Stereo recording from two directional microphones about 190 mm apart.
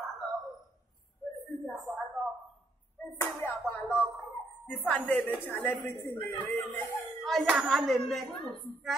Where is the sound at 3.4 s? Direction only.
10° left (ahead or behind).